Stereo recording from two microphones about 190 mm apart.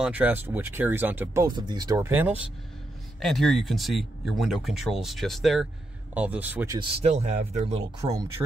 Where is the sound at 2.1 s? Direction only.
10° right (ahead or behind).